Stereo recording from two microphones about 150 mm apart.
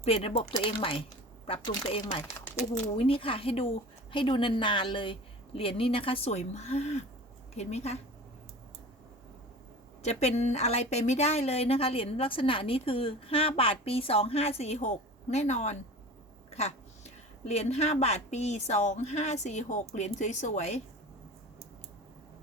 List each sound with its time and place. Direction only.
0.0 s a woman's voice: 40° left (ahead or behind)
10.0 s speech: 45° left (ahead or behind)